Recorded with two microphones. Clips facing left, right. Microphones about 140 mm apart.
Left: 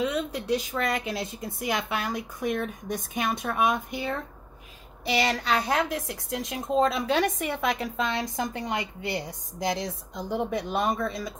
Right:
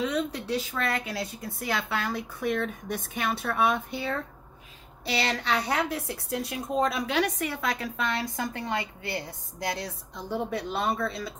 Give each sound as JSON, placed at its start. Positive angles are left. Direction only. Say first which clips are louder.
{"t": 0.0, "sound": "a woman's voice", "louder": "left 1 dB", "side_deg": 10}